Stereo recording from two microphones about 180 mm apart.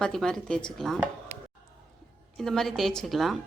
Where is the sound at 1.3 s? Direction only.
40° right (ahead or behind).